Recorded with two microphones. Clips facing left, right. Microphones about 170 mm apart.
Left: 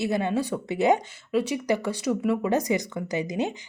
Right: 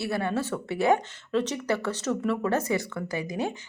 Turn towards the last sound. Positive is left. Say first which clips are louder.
# left 3 dB
turn(degrees=20)  # may be behind; listen again after turning